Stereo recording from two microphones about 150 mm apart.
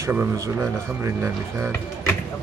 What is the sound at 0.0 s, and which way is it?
Speech, 10° right (ahead or behind).